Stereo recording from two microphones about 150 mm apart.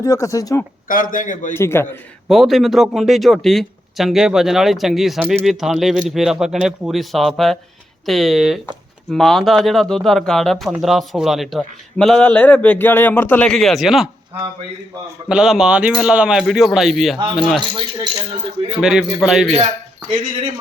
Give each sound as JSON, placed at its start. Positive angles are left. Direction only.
{"t": 0.0, "sound": "speech", "side_deg": 20}
{"t": 0.9, "sound": "a man's voice", "side_deg": 65}
{"t": 1.5, "sound": "a man's voice", "side_deg": 15}
{"t": 2.2, "sound": "speech", "side_deg": 0}
{"t": 15.3, "sound": "speech", "side_deg": -5}
{"t": 18.8, "sound": "speech", "side_deg": -5}